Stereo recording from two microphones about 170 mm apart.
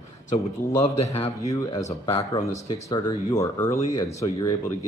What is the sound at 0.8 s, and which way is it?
Speech, 35° left (ahead or behind).